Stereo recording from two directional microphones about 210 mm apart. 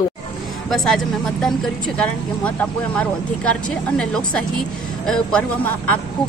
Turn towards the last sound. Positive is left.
turn(degrees=5)  # may be behind; listen again after turning